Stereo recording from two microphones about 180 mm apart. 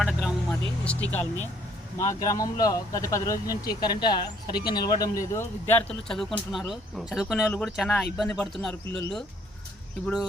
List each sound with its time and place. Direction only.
0.0 s vehicle: centre (ahead or behind)
0.5 s vehicle: 10° left (ahead or behind)
1.1 s speech: 10° left (ahead or behind)